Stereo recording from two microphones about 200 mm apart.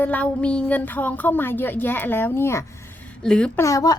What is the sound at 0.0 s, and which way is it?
Speech, 5° left (ahead or behind).